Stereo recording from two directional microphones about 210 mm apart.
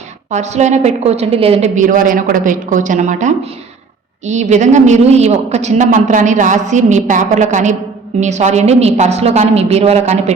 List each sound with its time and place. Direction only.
0.3 s a woman's voice: 35° right (ahead or behind)